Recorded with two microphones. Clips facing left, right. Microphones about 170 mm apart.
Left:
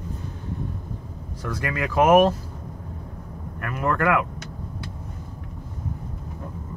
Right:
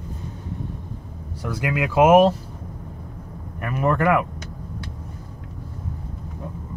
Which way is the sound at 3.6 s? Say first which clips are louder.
Right 3 dB; 20° right (ahead or behind).